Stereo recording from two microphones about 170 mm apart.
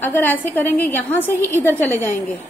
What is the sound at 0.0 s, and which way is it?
A woman's voice, 10° left (ahead or behind).